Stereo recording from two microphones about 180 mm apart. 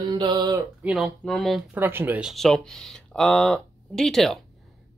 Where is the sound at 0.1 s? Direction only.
25° right (ahead or behind).